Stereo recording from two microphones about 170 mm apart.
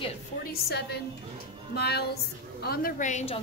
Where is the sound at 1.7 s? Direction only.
70° left (ahead or behind).